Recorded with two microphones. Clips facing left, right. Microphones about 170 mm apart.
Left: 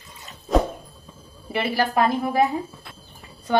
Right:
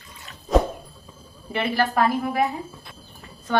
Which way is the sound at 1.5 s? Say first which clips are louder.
Even; 10° left (ahead or behind).